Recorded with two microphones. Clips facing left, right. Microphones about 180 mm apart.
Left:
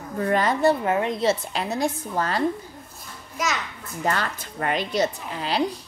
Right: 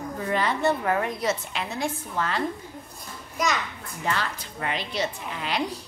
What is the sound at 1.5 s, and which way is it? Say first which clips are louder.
Speech: left 4 dB; 35° left (ahead or behind).